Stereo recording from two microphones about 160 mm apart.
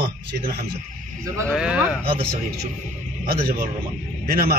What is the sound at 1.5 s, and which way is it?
Speech, 5° right (ahead or behind).